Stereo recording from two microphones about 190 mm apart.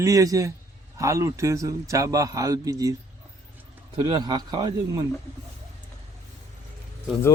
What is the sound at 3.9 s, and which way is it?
Speech, 20° right (ahead or behind).